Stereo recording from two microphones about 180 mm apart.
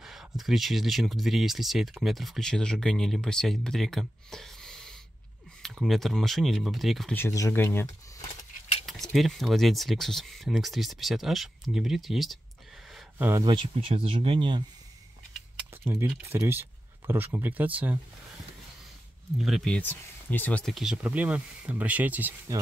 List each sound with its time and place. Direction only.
0.0 s speech: centre (ahead or behind)
7.2 s speech: 15° left (ahead or behind)
8.8 s speech: centre (ahead or behind)
13.2 s speech: 15° right (ahead or behind)
13.5 s speech: 30° right (ahead or behind)
15.8 s speech: 15° right (ahead or behind)
19.3 s speech: centre (ahead or behind)